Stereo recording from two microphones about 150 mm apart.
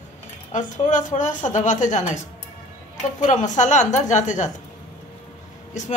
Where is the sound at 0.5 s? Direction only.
55° left (ahead or behind).